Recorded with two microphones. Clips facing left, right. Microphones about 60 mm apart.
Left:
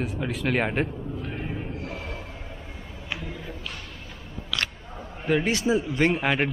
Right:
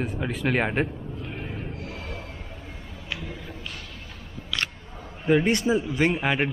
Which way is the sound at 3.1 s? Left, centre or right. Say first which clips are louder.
Left 1 dB; centre.